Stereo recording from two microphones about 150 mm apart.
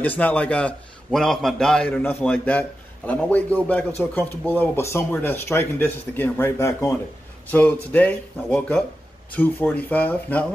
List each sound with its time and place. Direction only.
0.0 s speech: 10° left (ahead or behind)